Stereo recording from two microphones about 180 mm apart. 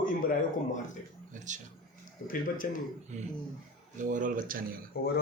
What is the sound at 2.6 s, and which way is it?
Speech, 50° left (ahead or behind).